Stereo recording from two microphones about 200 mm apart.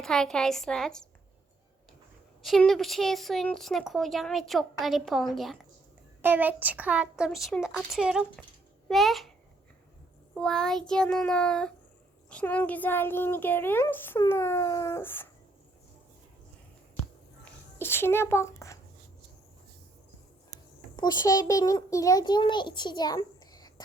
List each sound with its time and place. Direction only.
0.0 s a woman's voice: 5° left (ahead or behind)
2.4 s a woman's voice: centre (ahead or behind)
10.3 s a woman's voice: 5° left (ahead or behind)
17.4 s a sound: 10° left (ahead or behind)
20.9 s a child's voice: 20° left (ahead or behind)